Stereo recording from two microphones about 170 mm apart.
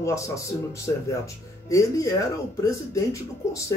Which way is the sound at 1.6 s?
20° left (ahead or behind).